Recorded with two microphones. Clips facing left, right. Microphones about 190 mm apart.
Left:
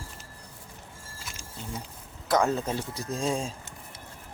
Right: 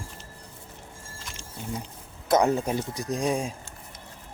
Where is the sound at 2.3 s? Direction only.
20° right (ahead or behind).